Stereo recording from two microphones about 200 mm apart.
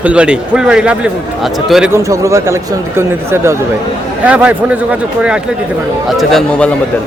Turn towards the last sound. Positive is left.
turn(degrees=0)  # may be behind; listen again after turning